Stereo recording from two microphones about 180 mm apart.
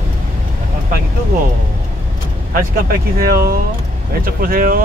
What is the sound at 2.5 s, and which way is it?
Speech, 55° right (ahead or behind).